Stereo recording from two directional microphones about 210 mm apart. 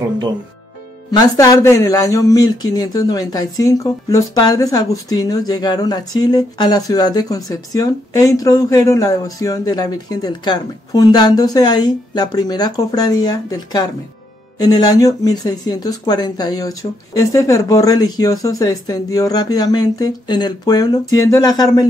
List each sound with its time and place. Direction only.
1.1 s speech: 15° left (ahead or behind)